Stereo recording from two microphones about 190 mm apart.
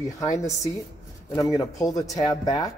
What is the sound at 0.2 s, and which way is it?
Speech, 15° left (ahead or behind).